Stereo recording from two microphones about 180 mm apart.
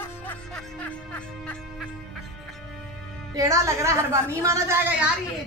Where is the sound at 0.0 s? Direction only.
10° left (ahead or behind).